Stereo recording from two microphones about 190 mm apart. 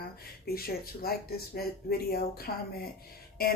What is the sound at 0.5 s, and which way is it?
Speech, 55° left (ahead or behind).